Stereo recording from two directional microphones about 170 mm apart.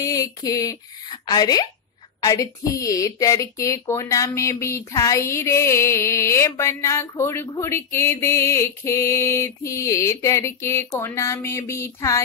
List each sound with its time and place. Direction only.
0.0 s a woman's voice: 20° left (ahead or behind)